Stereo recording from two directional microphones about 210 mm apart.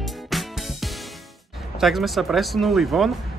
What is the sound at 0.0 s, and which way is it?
Music, centre (ahead or behind).